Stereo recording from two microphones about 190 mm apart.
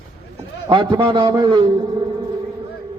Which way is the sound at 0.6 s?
25° right (ahead or behind).